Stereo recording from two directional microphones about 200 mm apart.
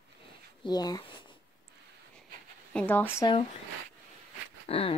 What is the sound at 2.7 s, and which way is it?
Speech, 5° left (ahead or behind).